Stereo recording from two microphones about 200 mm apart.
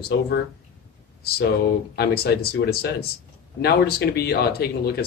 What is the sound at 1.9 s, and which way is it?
Speech, 50° left (ahead or behind).